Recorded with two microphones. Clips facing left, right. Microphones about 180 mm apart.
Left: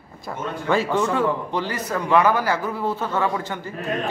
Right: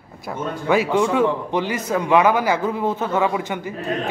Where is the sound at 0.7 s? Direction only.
15° right (ahead or behind).